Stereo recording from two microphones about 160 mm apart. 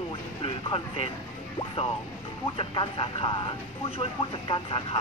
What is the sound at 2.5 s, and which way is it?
Speech, 30° left (ahead or behind).